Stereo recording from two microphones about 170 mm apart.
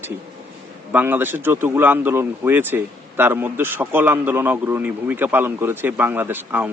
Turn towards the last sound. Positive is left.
turn(degrees=-10)  # may be behind; listen again after turning